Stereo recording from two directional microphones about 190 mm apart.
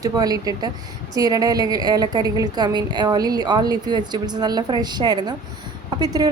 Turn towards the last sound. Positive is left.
turn(degrees=-20)  # may be behind; listen again after turning